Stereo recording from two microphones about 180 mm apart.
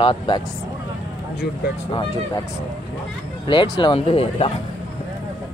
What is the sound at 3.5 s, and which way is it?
Speech, 25° left (ahead or behind).